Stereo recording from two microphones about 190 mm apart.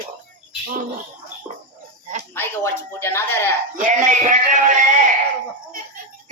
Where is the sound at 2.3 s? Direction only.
15° left (ahead or behind).